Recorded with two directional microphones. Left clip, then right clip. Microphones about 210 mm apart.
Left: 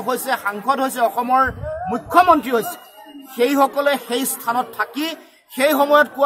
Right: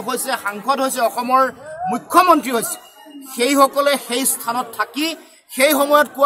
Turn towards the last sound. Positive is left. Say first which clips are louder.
# even
turn(degrees=0)  # may be behind; listen again after turning